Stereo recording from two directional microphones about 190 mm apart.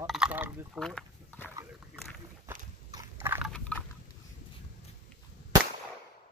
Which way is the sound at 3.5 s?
5° left (ahead or behind).